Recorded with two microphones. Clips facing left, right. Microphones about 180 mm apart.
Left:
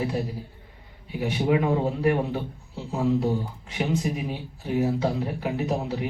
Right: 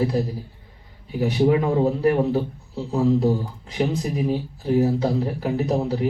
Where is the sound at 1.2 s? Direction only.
40° right (ahead or behind).